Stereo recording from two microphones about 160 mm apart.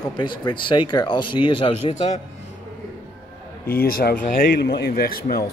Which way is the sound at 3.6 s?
75° left (ahead or behind).